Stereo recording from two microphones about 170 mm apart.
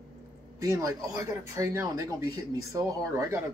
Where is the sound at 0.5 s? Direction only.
20° right (ahead or behind).